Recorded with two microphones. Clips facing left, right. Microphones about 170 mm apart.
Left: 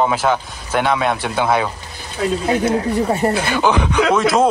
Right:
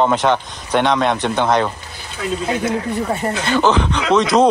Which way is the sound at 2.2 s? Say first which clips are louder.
Left 4 dB; 40° left (ahead or behind).